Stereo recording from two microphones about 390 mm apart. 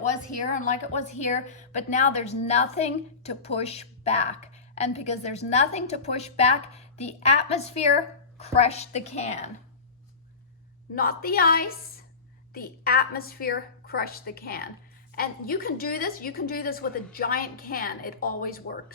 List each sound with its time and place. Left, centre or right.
0.4 s a woman's voice: centre
10.9 s a woman's voice: left